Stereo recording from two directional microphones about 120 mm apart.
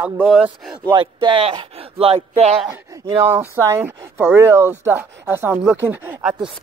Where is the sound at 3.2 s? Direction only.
15° right (ahead or behind).